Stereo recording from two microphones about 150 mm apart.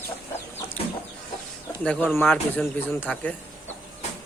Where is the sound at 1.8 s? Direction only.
5° left (ahead or behind).